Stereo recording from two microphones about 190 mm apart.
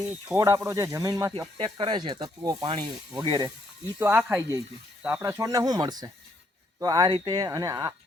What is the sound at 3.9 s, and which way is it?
Speech, 10° right (ahead or behind).